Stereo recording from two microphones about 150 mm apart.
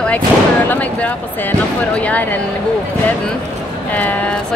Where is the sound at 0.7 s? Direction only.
10° left (ahead or behind).